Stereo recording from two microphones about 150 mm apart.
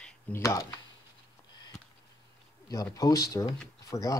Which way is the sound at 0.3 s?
20° left (ahead or behind).